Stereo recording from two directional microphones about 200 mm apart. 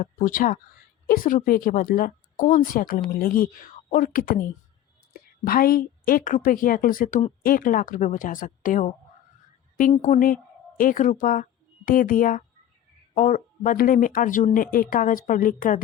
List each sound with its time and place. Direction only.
0.0 s a woman's voice: 40° left (ahead or behind)